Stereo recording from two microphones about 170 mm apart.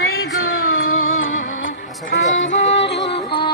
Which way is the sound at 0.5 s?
60° left (ahead or behind).